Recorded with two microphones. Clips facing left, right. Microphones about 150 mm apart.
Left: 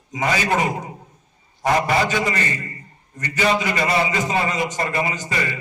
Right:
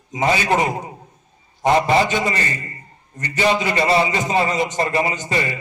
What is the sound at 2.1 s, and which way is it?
A man's voice, 30° right (ahead or behind).